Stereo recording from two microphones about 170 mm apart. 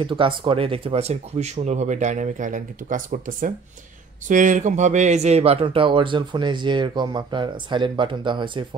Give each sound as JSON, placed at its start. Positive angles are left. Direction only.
{"t": 0.0, "sound": "speech", "side_deg": -30}